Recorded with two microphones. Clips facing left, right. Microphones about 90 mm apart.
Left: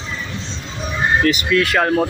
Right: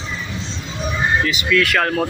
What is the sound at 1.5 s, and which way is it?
Speech, 30° left (ahead or behind).